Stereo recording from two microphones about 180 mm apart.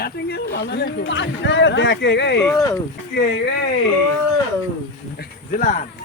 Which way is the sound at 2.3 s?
5° left (ahead or behind).